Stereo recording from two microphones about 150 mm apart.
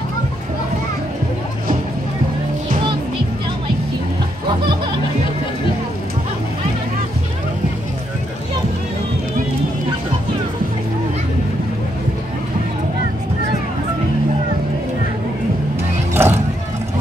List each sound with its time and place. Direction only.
16.1 s vehicle: 15° right (ahead or behind)